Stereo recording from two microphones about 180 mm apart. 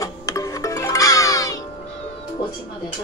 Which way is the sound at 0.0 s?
20° left (ahead or behind).